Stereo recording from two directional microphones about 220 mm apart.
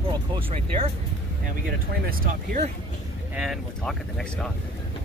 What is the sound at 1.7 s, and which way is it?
Speech, 40° right (ahead or behind).